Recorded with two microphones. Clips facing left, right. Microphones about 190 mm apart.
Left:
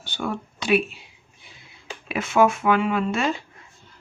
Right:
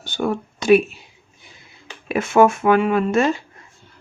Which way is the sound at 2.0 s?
45° right (ahead or behind).